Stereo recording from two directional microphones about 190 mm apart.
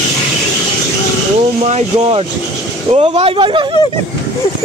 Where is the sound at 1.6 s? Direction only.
35° right (ahead or behind).